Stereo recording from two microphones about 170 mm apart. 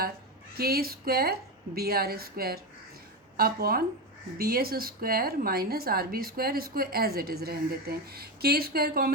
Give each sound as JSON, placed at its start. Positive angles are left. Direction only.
{"t": 0.5, "sound": "a woman's voice", "side_deg": -65}